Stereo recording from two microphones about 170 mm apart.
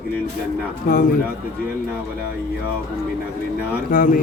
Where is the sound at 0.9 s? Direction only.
60° left (ahead or behind).